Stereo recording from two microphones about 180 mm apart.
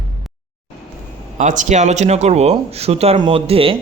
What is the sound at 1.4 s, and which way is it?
A man's voice, 45° right (ahead or behind).